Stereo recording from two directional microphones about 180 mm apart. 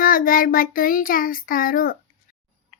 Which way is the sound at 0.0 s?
50° left (ahead or behind).